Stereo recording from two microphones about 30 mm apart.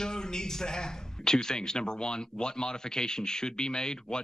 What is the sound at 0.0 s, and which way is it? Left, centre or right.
A man's voice, left.